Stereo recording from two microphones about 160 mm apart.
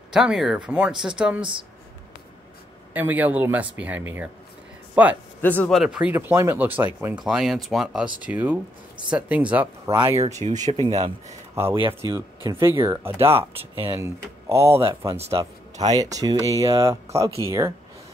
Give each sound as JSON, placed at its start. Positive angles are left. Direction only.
{"t": 0.1, "sound": "speech", "side_deg": -5}
{"t": 2.9, "sound": "speech", "side_deg": -10}
{"t": 5.4, "sound": "speech", "side_deg": 10}
{"t": 5.8, "sound": "speech", "side_deg": -5}
{"t": 10.1, "sound": "speech", "side_deg": -40}
{"t": 10.5, "sound": "speech", "side_deg": -25}
{"t": 13.3, "sound": "speech", "side_deg": -35}
{"t": 13.8, "sound": "speech", "side_deg": -15}